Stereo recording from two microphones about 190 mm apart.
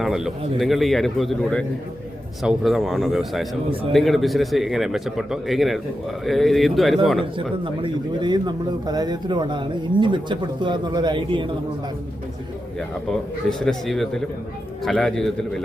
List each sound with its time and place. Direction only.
0.0 s a man's voice: centre (ahead or behind)
7.6 s speech: 25° right (ahead or behind)
13.5 s a man's voice: 5° left (ahead or behind)